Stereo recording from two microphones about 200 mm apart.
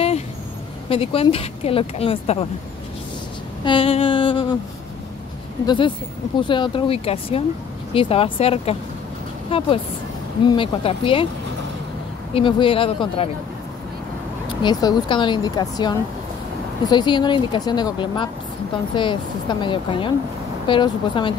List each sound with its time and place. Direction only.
0.8 s speech: 25° left (ahead or behind)
3.6 s speech: 25° left (ahead or behind)
5.7 s speech: 25° left (ahead or behind)
12.4 s speech: 25° left (ahead or behind)
14.6 s speech: 20° left (ahead or behind)